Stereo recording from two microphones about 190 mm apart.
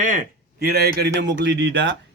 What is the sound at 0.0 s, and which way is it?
Speech, 45° right (ahead or behind).